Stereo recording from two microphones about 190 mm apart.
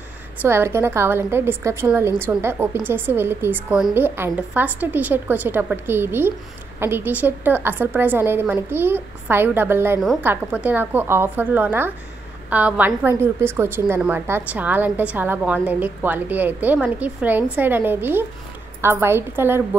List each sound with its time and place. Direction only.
0.4 s a woman's voice: 10° right (ahead or behind)